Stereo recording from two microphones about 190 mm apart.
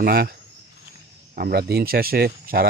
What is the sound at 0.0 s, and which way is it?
Speech, 55° right (ahead or behind).